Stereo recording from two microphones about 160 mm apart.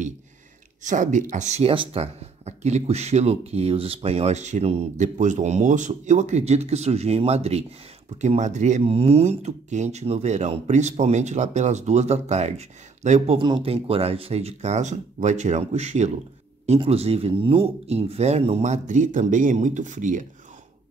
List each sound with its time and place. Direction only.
0.8 s speech: 50° right (ahead or behind)
13.4 s speech: 35° right (ahead or behind); by 20.2 s 55° right (ahead or behind)